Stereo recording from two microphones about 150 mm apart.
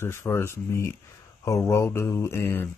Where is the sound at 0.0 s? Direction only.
15° left (ahead or behind).